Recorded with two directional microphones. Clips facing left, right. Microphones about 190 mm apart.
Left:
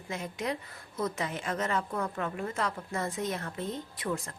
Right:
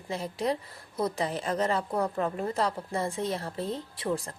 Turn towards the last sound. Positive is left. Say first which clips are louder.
# right 3 dB
turn(degrees=-30)  # may be behind; listen again after turning